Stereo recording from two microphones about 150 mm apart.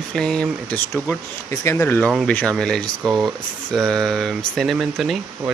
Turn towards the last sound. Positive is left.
turn(degrees=0)  # may be behind; listen again after turning